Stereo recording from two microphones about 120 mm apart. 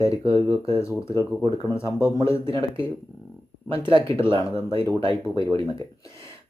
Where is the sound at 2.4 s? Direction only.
45° right (ahead or behind).